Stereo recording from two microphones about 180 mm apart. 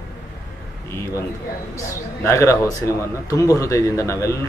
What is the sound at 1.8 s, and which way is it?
Speech, 15° left (ahead or behind).